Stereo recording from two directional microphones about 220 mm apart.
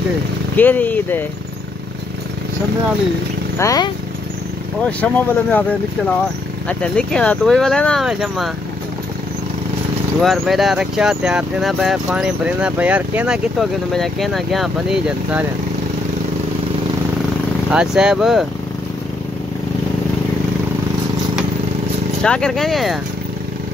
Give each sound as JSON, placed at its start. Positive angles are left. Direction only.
{"t": 0.6, "sound": "speech", "side_deg": 10}
{"t": 3.5, "sound": "speech", "side_deg": 15}
{"t": 10.2, "sound": "speech", "side_deg": 0}
{"t": 17.6, "sound": "speech", "side_deg": -5}
{"t": 22.2, "sound": "speech", "side_deg": 5}